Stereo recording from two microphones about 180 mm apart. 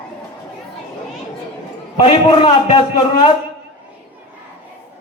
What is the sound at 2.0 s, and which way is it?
A man's voice, 30° left (ahead or behind).